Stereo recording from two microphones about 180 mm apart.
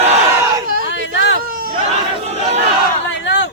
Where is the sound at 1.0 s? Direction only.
90° left.